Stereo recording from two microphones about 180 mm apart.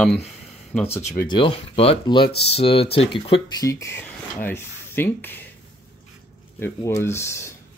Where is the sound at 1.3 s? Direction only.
25° left (ahead or behind).